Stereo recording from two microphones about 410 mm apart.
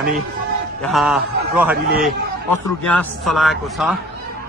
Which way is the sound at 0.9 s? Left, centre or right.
Centre.